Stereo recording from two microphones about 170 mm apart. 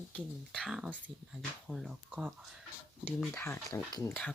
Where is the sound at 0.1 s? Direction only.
5° left (ahead or behind).